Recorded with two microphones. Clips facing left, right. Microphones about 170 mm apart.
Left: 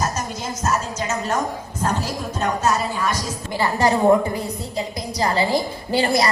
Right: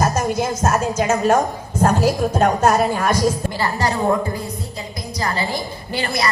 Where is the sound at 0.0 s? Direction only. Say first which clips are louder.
Right 7 dB; 50° right (ahead or behind).